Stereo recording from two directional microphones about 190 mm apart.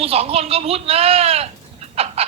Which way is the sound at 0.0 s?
30° right (ahead or behind).